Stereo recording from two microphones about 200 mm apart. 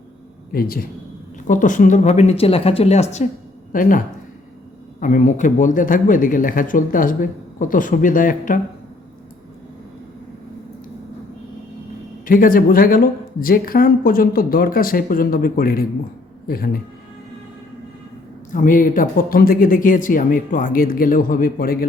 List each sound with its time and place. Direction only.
0.5 s speech: 50° left (ahead or behind)
12.2 s speech: 45° left (ahead or behind)
18.5 s speech: 40° left (ahead or behind)